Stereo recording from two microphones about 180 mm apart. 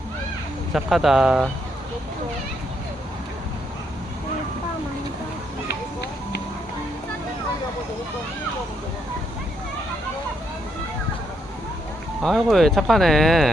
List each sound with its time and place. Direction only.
0.7 s speech: centre (ahead or behind)
5.6 s music: 65° left (ahead or behind)
12.2 s speech: centre (ahead or behind)